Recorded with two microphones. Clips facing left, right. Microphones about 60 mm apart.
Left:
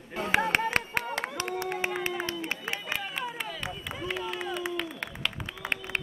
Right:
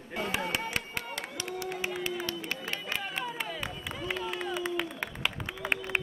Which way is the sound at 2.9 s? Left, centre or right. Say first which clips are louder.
Left 1 dB; centre.